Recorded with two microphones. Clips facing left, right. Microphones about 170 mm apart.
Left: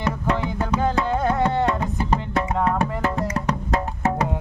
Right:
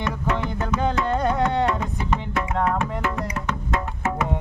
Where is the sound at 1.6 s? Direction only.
30° left (ahead or behind).